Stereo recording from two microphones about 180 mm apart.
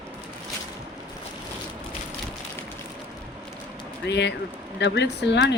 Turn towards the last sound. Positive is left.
turn(degrees=75)  # may be behind; listen again after turning